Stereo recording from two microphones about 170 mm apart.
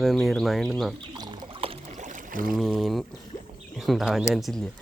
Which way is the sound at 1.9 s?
45° right (ahead or behind).